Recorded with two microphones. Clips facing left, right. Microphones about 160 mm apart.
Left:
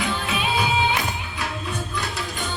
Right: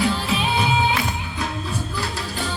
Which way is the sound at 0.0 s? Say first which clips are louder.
Right 4 dB; 30° right (ahead or behind).